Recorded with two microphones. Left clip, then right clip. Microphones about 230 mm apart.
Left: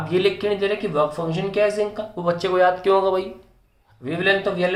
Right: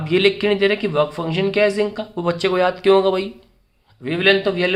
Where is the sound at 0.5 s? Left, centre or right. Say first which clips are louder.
Right 3 dB; right.